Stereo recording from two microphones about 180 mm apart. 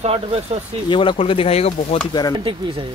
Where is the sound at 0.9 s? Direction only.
30° left (ahead or behind).